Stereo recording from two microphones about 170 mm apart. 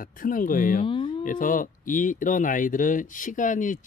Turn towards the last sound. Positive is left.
turn(degrees=50)  # may be behind; listen again after turning